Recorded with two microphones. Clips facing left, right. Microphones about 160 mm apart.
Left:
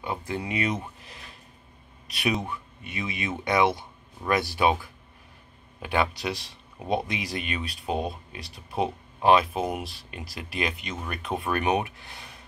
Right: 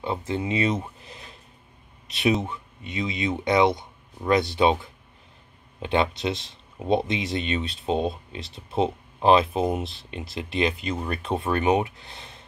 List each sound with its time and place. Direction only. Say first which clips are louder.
0.0 s speech: right 4 dB; 25° right (ahead or behind)